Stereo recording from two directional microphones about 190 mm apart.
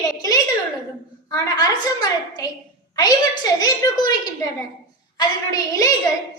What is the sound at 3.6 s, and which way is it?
A woman's voice, 20° left (ahead or behind).